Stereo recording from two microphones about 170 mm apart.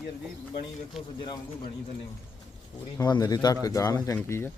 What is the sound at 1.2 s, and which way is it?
Speech, 30° left (ahead or behind).